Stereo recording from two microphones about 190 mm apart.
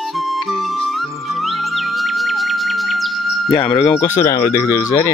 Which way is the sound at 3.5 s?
30° left (ahead or behind).